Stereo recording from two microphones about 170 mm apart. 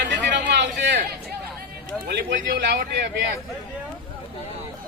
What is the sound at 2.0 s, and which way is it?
A man's voice, 80° right.